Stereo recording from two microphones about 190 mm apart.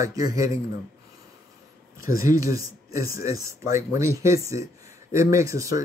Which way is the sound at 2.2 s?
15° right (ahead or behind).